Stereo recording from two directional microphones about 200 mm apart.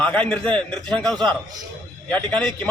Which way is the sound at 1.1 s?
20° right (ahead or behind).